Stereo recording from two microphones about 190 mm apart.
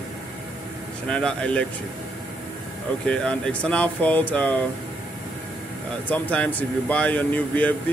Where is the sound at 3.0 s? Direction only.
5° left (ahead or behind).